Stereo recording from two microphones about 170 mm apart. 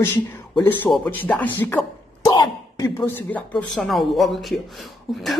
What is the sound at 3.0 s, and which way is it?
Speech, 10° left (ahead or behind).